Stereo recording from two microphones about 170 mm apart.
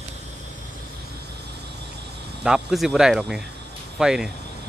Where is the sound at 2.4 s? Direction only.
5° right (ahead or behind).